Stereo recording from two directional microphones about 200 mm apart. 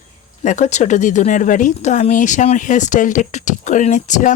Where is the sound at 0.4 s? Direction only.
35° left (ahead or behind).